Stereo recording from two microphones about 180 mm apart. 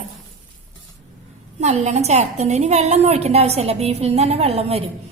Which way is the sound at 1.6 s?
40° right (ahead or behind).